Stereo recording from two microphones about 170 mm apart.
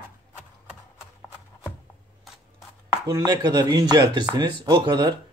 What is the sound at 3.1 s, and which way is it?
Speech, 20° right (ahead or behind).